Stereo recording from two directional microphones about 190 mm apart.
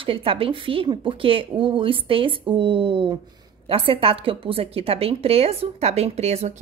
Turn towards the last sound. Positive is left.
turn(degrees=-35)  # may be behind; listen again after turning